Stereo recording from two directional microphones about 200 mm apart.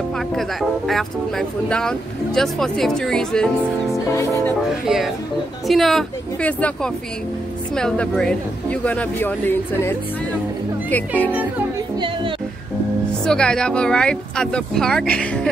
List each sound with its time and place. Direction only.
0.4 s speech: centre (ahead or behind)
3.9 s music: 15° left (ahead or behind)
4.8 s speech: centre (ahead or behind)
12.0 s music: 25° right (ahead or behind)
13.2 s speech: 5° left (ahead or behind)